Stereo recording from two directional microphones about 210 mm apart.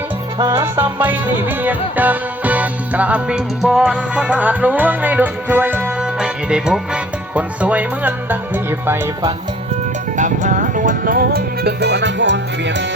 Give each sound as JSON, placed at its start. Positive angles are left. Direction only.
{"t": 0.3, "sound": "music", "side_deg": -15}
{"t": 10.2, "sound": "music", "side_deg": -35}